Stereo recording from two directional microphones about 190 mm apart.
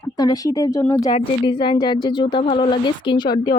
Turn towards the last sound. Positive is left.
turn(degrees=20)  # may be behind; listen again after turning